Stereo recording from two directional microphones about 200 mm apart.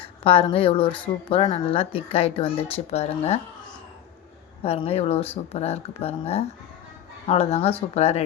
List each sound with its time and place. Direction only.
0.3 s speech: 25° left (ahead or behind)
4.6 s speech: 30° left (ahead or behind)